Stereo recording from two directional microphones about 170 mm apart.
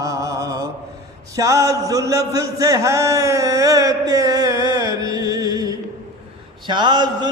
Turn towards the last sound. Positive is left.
turn(degrees=-25)  # may be behind; listen again after turning